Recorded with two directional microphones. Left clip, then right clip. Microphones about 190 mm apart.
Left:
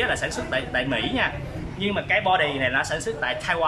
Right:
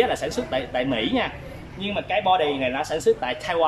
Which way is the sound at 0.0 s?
15° right (ahead or behind).